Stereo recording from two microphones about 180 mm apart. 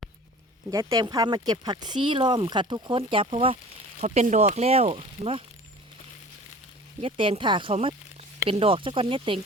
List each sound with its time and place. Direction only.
0.7 s speech: 20° right (ahead or behind)
7.0 s speech: 30° right (ahead or behind)